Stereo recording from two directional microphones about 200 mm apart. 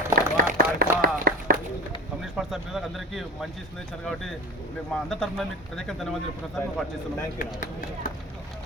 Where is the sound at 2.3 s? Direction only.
Centre (ahead or behind).